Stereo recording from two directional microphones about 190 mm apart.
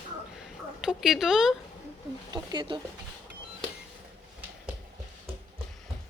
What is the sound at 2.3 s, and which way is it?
Speech, 25° right (ahead or behind).